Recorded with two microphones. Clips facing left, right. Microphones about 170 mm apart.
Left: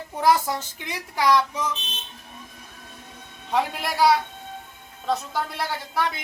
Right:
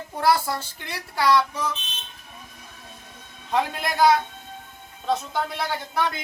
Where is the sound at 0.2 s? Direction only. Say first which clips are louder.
Left 1 dB; 15° left (ahead or behind).